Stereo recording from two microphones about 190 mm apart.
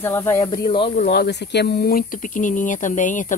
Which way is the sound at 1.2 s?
60° left (ahead or behind).